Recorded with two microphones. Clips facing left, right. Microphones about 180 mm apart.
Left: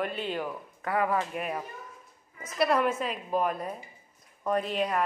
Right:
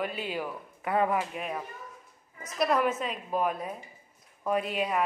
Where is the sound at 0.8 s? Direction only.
25° right (ahead or behind).